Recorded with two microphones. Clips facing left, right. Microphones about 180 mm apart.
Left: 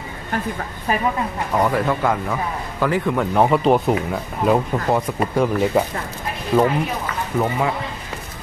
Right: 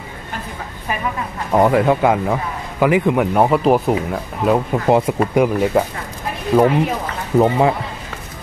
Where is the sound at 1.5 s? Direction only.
25° right (ahead or behind); by 3.9 s centre (ahead or behind).